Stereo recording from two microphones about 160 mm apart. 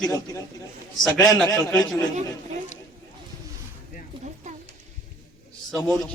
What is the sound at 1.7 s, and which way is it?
Speech, 20° left (ahead or behind).